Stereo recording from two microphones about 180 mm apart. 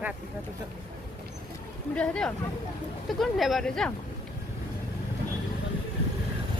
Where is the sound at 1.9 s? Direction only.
5° left (ahead or behind).